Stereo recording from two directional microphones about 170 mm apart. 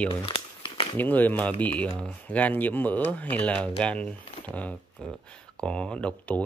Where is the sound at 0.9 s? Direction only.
10° left (ahead or behind).